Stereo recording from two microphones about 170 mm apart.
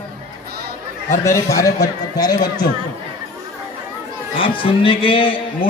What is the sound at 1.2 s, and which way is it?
A man's voice, 20° left (ahead or behind).